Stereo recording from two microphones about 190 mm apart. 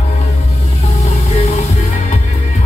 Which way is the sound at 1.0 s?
35° left (ahead or behind).